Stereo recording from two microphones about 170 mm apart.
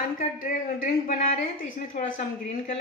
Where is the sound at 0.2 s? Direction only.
55° left (ahead or behind).